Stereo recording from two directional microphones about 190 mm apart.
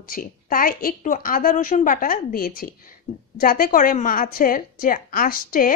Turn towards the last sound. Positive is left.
turn(degrees=45)  # may be behind; listen again after turning